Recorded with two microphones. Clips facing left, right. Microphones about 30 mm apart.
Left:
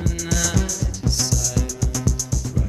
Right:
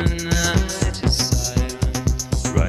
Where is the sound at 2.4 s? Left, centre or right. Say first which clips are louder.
Right 5 dB; right.